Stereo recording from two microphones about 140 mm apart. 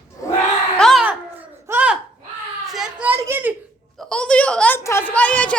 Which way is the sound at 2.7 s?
5° right (ahead or behind).